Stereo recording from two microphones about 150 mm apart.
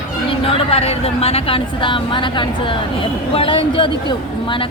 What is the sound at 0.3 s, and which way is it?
A woman's voice, 40° left (ahead or behind).